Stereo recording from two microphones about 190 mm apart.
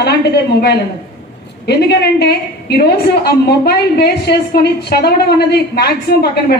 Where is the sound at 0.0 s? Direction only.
55° left (ahead or behind).